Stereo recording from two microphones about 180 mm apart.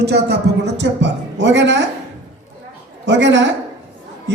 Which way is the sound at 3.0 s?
90° right.